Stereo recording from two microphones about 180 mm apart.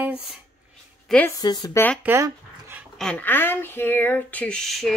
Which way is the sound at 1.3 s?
20° left (ahead or behind).